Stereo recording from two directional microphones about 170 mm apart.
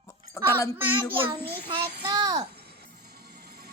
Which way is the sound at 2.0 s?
25° right (ahead or behind).